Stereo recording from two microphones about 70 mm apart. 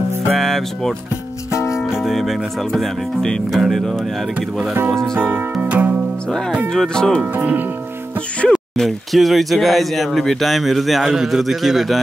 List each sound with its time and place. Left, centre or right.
0.3 s speech: centre
5.2 s music: right
6.7 s speech: centre
7.3 s speech: right
8.5 s speech: centre